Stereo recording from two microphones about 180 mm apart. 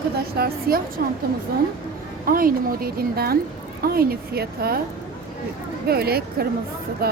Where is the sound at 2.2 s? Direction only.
55° right (ahead or behind).